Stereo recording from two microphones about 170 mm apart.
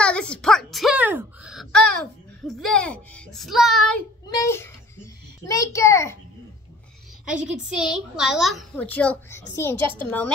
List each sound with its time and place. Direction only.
0.0 s a sound: 5° left (ahead or behind)
2.6 s a child's voice: 5° left (ahead or behind)
4.4 s a woman's voice: 15° left (ahead or behind)
7.7 s a child's voice: 5° right (ahead or behind)